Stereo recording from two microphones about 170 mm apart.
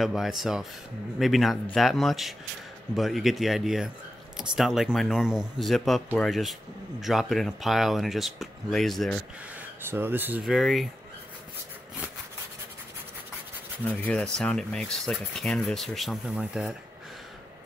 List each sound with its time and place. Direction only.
0.0 s speech: centre (ahead or behind)
9.6 s speech: 15° right (ahead or behind)
13.8 s speech: 5° left (ahead or behind)